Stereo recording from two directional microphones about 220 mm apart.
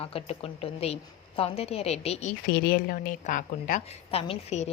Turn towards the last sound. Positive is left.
turn(degrees=30)  # may be behind; listen again after turning